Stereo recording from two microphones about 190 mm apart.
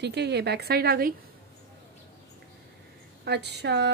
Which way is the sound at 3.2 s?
65° right (ahead or behind).